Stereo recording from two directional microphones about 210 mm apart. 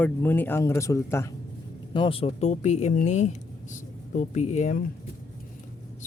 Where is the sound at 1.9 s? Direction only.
25° left (ahead or behind).